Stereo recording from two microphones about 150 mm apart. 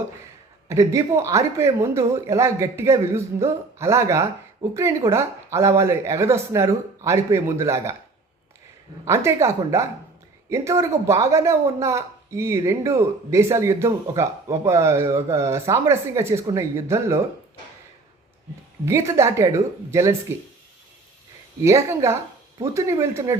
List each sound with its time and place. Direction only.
0.7 s speech: 20° right (ahead or behind)
9.0 s speech: 15° right (ahead or behind)
18.9 s speech: 20° right (ahead or behind)
21.6 s speech: 20° right (ahead or behind)